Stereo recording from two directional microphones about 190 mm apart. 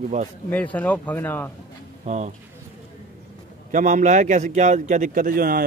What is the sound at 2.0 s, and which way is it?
Speech, 40° right (ahead or behind).